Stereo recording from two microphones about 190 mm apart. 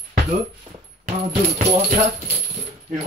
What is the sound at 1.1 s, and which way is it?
Music, 45° right (ahead or behind).